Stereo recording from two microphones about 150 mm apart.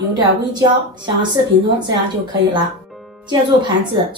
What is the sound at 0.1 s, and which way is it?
A woman's voice, 30° right (ahead or behind).